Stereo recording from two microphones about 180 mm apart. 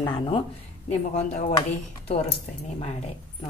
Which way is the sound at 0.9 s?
40° left (ahead or behind).